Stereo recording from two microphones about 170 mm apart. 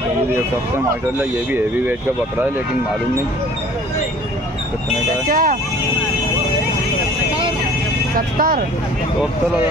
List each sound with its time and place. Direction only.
5.2 s speech: 55° right (ahead or behind)
8.4 s speech: 55° right (ahead or behind)